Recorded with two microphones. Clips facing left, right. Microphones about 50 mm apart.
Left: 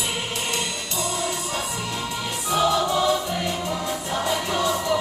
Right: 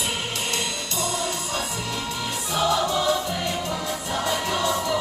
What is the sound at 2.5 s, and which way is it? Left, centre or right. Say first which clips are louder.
Music: left 3 dB; centre.